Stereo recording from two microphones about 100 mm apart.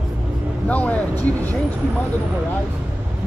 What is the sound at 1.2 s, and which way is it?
Speech, 15° left (ahead or behind).